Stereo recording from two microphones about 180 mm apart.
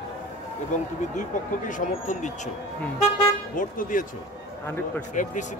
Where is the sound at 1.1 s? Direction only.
45° left (ahead or behind).